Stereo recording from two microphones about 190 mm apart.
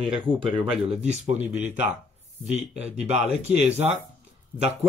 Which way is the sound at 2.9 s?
35° right (ahead or behind).